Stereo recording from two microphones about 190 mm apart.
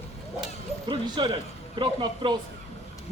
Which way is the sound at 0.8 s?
25° right (ahead or behind).